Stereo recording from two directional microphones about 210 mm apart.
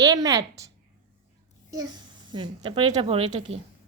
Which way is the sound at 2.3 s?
20° right (ahead or behind).